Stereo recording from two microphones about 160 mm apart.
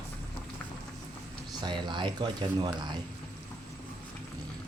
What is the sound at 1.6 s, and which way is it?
Speech, 30° right (ahead or behind).